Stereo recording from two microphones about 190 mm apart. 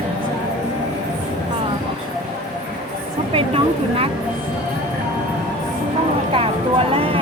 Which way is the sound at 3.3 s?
30° right (ahead or behind).